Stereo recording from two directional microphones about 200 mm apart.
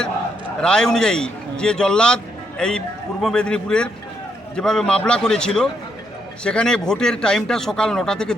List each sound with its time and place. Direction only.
0.6 s a man's voice: 5° left (ahead or behind)